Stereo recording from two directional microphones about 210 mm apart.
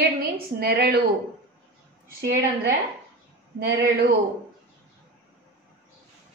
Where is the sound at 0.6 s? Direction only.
50° right (ahead or behind).